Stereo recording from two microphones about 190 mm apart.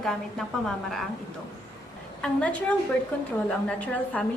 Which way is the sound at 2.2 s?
5° left (ahead or behind).